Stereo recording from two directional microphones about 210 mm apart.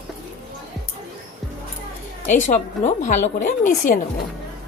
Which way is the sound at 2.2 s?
35° left (ahead or behind).